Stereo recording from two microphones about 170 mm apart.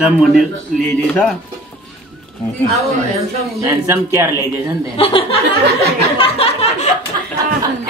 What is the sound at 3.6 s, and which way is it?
Speech, 15° right (ahead or behind).